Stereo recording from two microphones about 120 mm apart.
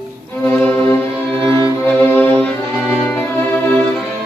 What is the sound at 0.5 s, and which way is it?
Violin, 15° left (ahead or behind).